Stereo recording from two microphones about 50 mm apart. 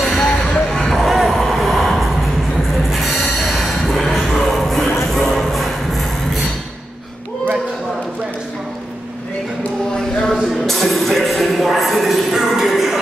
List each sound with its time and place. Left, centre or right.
0.2 s vehicle: centre
2.9 s music: centre
9.9 s a sound: centre
12.6 s music: centre